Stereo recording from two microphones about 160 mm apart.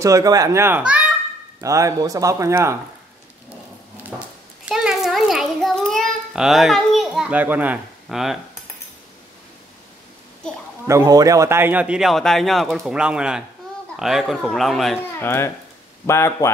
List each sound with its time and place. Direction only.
0.0 s speech: 20° right (ahead or behind)
1.6 s speech: 20° right (ahead or behind)
4.6 s child singing: 5° right (ahead or behind)
10.9 s a man's voice: 20° right (ahead or behind); by 15.0 s centre (ahead or behind)
15.1 s speech: 15° left (ahead or behind)